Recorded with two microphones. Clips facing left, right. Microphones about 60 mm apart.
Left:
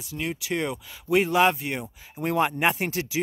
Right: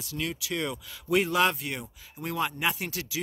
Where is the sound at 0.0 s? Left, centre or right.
Left.